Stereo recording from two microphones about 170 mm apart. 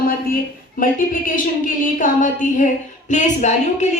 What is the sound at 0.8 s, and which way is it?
A woman's voice, 55° left (ahead or behind).